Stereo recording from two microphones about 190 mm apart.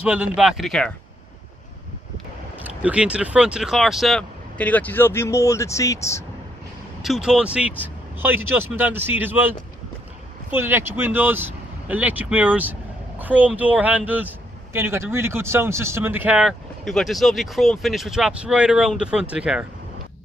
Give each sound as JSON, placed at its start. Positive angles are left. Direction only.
{"t": 0.0, "sound": "speech", "side_deg": -5}
{"t": 2.6, "sound": "speech", "side_deg": -5}
{"t": 7.0, "sound": "speech", "side_deg": 0}
{"t": 10.5, "sound": "speech", "side_deg": -10}